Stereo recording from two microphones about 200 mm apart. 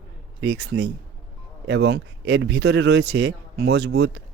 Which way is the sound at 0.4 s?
60° right (ahead or behind).